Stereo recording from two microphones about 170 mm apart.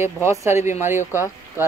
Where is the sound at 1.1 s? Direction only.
20° left (ahead or behind).